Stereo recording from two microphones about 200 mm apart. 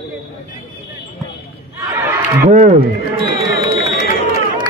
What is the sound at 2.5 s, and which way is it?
Speech, 40° right (ahead or behind).